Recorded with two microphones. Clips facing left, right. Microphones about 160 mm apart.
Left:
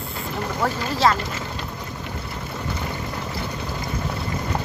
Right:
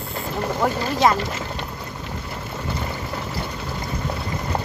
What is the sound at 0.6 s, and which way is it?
Speech, 15° right (ahead or behind).